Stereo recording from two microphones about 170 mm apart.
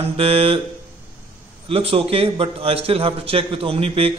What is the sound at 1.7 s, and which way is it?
Speech, 35° right (ahead or behind).